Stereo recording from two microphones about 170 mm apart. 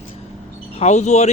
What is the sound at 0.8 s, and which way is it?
Speech, 40° left (ahead or behind).